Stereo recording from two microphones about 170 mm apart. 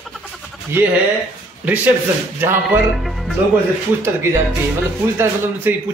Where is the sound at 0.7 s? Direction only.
15° right (ahead or behind).